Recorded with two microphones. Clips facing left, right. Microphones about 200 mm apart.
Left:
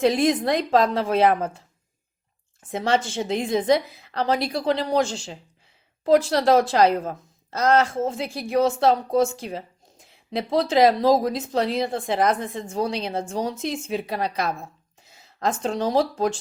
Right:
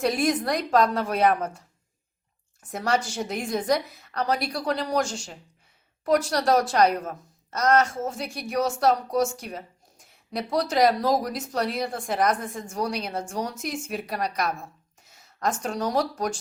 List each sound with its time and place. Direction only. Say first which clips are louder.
0.0 s a woman's voice: left 4 dB; 25° left (ahead or behind)
2.7 s a woman's voice: left 3 dB; 25° left (ahead or behind)
6.1 s a woman's voice: left 4 dB; 25° left (ahead or behind)